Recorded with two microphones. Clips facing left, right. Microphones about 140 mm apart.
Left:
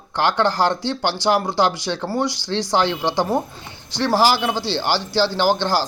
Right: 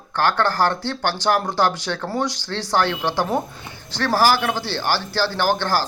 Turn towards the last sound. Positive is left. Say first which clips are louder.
# left 2 dB
turn(degrees=15)  # may be behind; listen again after turning